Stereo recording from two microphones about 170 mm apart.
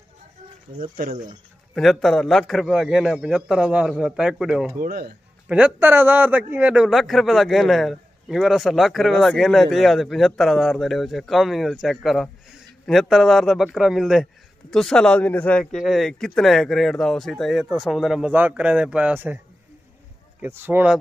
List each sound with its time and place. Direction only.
0.9 s speech: 50° right (ahead or behind)
1.8 s a man's voice: centre (ahead or behind)
4.8 s speech: 60° right (ahead or behind)
5.8 s a man's voice: 10° right (ahead or behind)